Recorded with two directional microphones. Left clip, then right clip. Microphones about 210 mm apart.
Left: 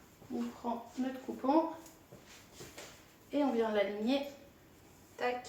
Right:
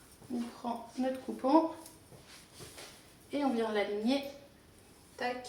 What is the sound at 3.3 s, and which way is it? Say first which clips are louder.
Speech: even; 25° right (ahead or behind).